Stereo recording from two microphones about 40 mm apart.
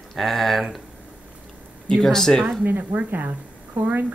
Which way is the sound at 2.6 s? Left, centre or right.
Right.